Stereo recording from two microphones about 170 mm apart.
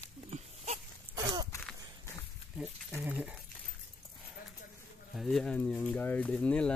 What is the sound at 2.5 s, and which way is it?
Speech, 10° right (ahead or behind).